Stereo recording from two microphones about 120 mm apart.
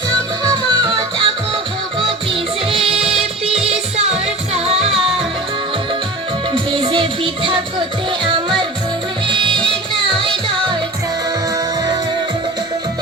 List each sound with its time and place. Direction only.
0.1 s music: 35° right (ahead or behind)
2.8 s music: 5° right (ahead or behind)
3.6 s music: 60° right (ahead or behind)
6.5 s music: 40° right (ahead or behind)
11.5 s music: 35° right (ahead or behind)